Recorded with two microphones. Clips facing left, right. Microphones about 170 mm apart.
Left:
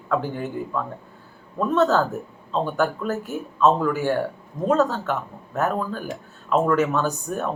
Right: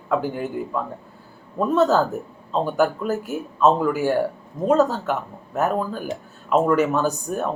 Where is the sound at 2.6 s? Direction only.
15° right (ahead or behind).